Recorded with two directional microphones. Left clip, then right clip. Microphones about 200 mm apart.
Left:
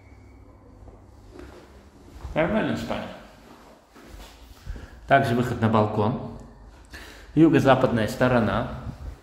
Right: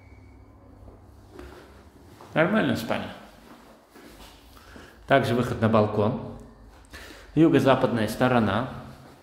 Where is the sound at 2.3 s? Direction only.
25° right (ahead or behind).